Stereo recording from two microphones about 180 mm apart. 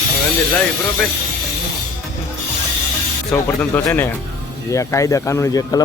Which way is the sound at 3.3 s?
10° left (ahead or behind).